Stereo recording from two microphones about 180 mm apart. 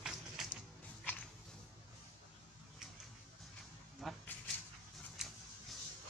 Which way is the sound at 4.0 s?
Centre (ahead or behind).